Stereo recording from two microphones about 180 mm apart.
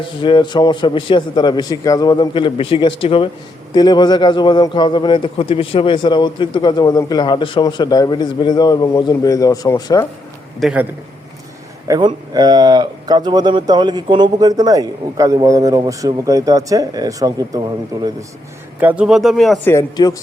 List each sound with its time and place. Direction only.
0.0 s a man's voice: 30° left (ahead or behind)
10.6 s speech: 5° right (ahead or behind)
11.9 s speech: 25° right (ahead or behind)
18.8 s speech: 10° right (ahead or behind)
19.6 s speech: 20° left (ahead or behind)